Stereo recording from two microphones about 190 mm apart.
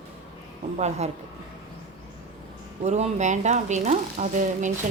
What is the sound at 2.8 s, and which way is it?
A woman's voice, 35° right (ahead or behind).